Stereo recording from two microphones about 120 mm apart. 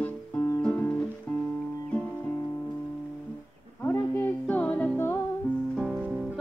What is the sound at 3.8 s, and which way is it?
Music, 15° left (ahead or behind).